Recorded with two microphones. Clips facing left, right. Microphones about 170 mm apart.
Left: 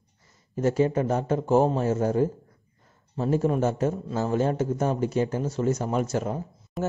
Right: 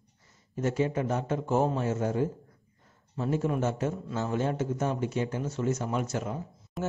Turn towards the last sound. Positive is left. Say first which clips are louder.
# left 4 dB
turn(degrees=0)  # may be behind; listen again after turning